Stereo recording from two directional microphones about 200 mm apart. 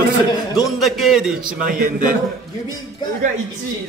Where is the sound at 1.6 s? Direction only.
40° right (ahead or behind).